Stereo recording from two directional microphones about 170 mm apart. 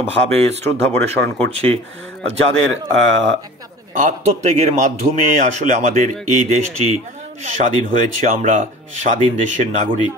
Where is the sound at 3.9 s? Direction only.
45° right (ahead or behind).